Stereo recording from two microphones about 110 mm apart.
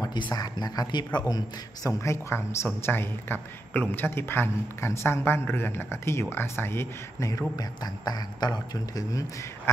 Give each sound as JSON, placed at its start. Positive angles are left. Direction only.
{"t": 0.0, "sound": "speech", "side_deg": 40}